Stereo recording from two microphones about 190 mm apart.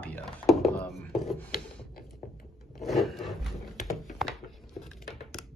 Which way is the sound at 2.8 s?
Centre (ahead or behind).